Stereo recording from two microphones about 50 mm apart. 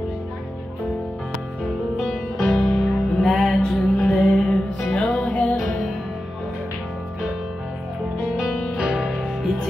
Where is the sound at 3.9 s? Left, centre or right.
Left.